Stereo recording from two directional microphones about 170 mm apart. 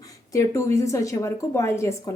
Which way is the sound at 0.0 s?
20° left (ahead or behind).